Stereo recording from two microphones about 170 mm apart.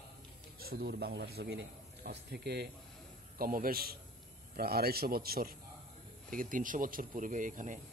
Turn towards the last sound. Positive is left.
turn(degrees=-50)  # may be behind; listen again after turning